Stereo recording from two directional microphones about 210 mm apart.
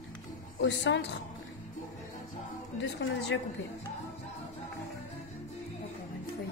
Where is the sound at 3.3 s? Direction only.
65° left (ahead or behind).